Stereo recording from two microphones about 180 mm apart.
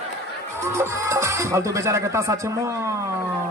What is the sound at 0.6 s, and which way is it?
Speech, 15° right (ahead or behind).